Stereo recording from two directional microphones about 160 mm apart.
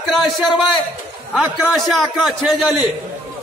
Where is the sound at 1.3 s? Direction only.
5° right (ahead or behind).